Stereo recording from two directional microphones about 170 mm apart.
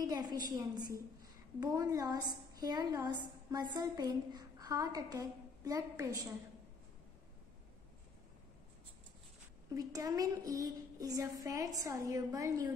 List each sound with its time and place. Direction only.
0.0 s a woman's voice: 25° right (ahead or behind)
9.8 s a woman's voice: 20° right (ahead or behind)